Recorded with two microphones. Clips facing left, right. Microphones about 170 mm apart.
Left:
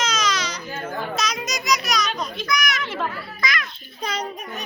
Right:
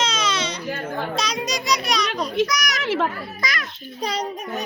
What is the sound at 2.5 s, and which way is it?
Speech, 40° right (ahead or behind).